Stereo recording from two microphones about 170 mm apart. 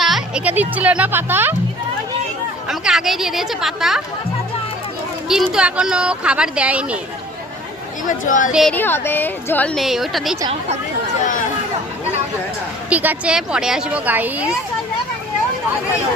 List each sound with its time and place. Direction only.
0.0 s speech: 5° right (ahead or behind)
2.6 s a woman's voice: centre (ahead or behind)
5.3 s speech: 5° right (ahead or behind)
8.0 s speech: 50° left (ahead or behind)
8.7 s a woman's voice: 10° left (ahead or behind)
12.9 s a woman's voice: 10° right (ahead or behind)